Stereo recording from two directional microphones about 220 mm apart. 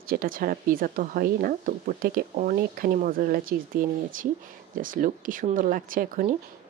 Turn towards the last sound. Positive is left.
turn(degrees=-40)  # may be behind; listen again after turning